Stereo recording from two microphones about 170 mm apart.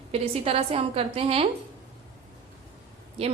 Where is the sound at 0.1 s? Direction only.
35° right (ahead or behind).